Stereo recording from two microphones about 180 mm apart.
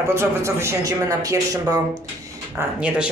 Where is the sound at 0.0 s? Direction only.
15° right (ahead or behind).